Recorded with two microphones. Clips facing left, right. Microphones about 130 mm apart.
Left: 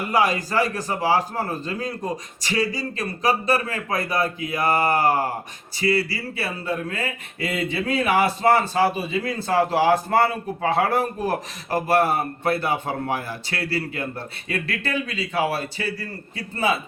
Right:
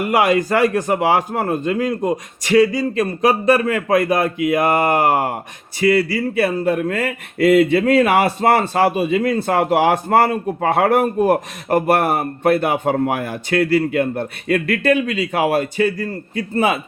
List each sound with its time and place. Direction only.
0.1 s speech: 60° right (ahead or behind)
3.0 s a man's voice: 55° right (ahead or behind)